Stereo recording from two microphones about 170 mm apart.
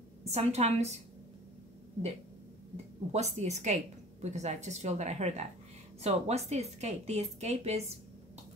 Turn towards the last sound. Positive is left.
turn(degrees=-40)  # may be behind; listen again after turning